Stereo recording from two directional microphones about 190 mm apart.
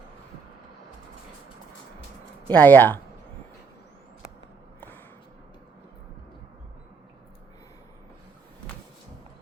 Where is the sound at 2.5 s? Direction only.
10° left (ahead or behind).